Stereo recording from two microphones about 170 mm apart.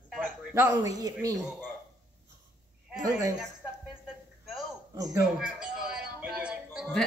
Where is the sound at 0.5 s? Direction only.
20° right (ahead or behind).